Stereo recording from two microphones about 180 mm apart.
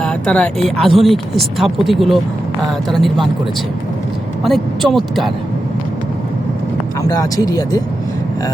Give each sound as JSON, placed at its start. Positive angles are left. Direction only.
{"t": 0.0, "sound": "speech", "side_deg": 5}
{"t": 4.4, "sound": "speech", "side_deg": 0}
{"t": 7.2, "sound": "speech", "side_deg": 20}